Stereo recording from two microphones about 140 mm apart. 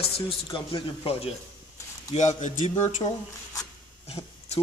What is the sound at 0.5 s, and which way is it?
Speech, 40° left (ahead or behind).